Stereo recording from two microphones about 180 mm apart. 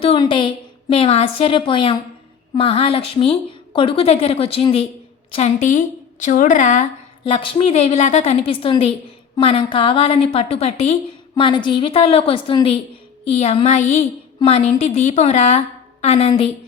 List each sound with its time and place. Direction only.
0.0 s a woman's voice: 30° left (ahead or behind)
7.3 s a woman's voice: 30° left (ahead or behind)